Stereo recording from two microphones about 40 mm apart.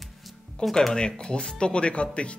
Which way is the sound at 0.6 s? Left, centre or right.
Centre.